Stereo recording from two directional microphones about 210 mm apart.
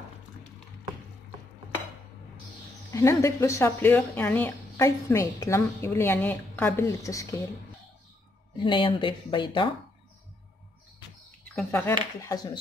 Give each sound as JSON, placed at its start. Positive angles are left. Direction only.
{"t": 2.9, "sound": "speech", "side_deg": 15}
{"t": 8.6, "sound": "speech", "side_deg": 25}
{"t": 11.5, "sound": "speech", "side_deg": 10}